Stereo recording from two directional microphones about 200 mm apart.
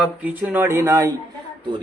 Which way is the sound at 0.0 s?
5° right (ahead or behind).